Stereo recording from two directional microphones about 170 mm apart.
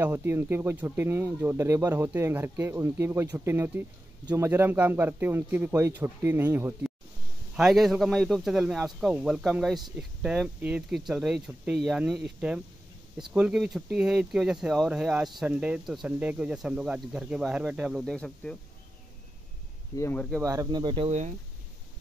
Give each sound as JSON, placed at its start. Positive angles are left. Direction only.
{"t": 0.0, "sound": "a man's voice", "side_deg": -15}
{"t": 7.5, "sound": "speech", "side_deg": 0}
{"t": 20.0, "sound": "speech", "side_deg": 15}
{"t": 20.4, "sound": "speech", "side_deg": -20}